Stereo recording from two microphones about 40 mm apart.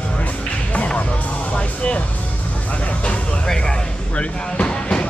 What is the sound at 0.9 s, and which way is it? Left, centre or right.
Music, left.